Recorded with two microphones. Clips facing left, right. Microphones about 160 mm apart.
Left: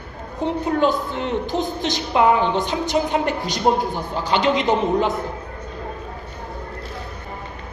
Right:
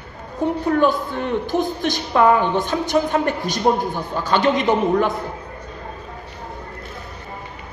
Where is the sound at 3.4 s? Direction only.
50° right (ahead or behind).